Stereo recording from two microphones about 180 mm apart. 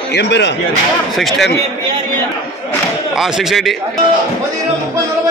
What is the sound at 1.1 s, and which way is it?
Speech, centre (ahead or behind).